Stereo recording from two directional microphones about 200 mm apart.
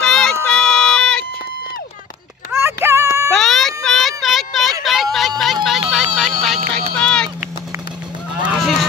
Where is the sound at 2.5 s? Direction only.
15° right (ahead or behind).